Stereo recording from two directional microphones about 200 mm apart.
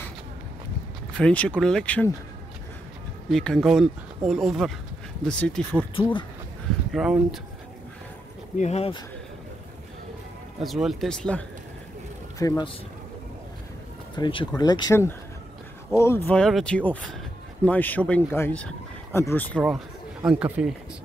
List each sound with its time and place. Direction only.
1.1 s speech: 5° left (ahead or behind)
3.3 s speech: centre (ahead or behind)
6.9 s speech: centre (ahead or behind)
8.5 s speech: 35° left (ahead or behind)
10.6 s speech: centre (ahead or behind)
12.4 s speech: 20° left (ahead or behind)
14.1 s speech: 25° left (ahead or behind)
19.7 s a man's voice: 10° right (ahead or behind)